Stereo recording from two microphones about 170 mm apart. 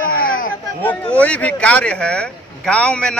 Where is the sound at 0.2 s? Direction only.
55° left (ahead or behind).